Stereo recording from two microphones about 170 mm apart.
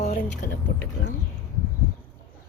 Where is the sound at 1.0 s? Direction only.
90° left.